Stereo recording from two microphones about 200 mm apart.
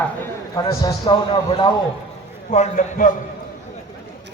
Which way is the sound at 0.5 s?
15° left (ahead or behind).